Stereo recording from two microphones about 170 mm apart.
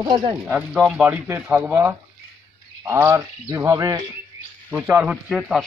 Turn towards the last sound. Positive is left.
turn(degrees=-5)  # may be behind; listen again after turning